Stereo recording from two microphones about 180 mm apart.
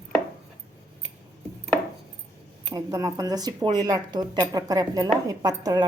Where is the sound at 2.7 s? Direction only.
20° right (ahead or behind).